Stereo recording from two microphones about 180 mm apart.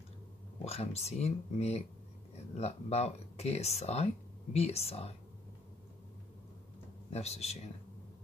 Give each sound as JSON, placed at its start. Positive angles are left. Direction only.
{"t": 0.7, "sound": "speech", "side_deg": 35}
{"t": 7.1, "sound": "speech", "side_deg": 35}